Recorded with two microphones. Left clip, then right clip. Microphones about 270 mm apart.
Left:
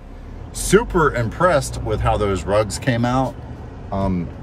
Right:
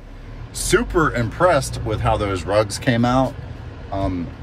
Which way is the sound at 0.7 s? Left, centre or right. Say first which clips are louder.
Left 2 dB; centre.